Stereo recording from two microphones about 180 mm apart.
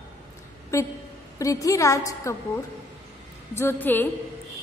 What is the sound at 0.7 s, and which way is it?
A woman's voice, 15° left (ahead or behind).